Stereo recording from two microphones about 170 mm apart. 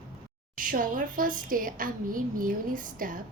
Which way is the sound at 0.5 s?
55° right (ahead or behind).